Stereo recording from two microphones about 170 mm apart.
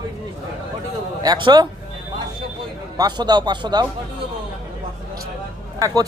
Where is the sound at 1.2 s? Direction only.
25° right (ahead or behind).